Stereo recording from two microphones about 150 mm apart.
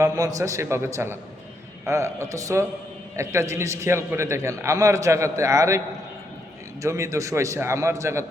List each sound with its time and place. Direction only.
0.0 s a man's voice: 20° right (ahead or behind)
6.8 s a man's voice: 20° right (ahead or behind)